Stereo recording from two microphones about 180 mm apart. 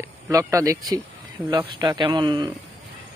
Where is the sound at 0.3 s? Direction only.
20° right (ahead or behind).